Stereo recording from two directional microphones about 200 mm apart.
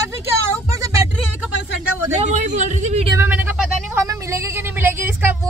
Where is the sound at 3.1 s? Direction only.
10° right (ahead or behind).